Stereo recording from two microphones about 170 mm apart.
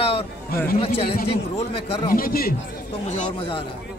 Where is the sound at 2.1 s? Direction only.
60° left (ahead or behind).